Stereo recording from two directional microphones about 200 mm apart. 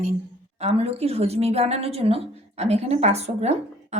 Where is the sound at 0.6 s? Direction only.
30° right (ahead or behind).